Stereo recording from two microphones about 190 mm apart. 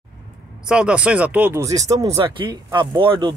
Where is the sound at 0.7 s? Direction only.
5° right (ahead or behind).